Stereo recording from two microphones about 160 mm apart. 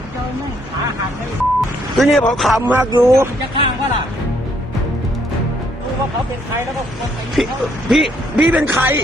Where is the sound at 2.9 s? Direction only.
30° right (ahead or behind).